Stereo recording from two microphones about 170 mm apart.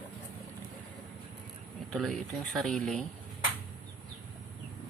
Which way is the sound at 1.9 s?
5° left (ahead or behind).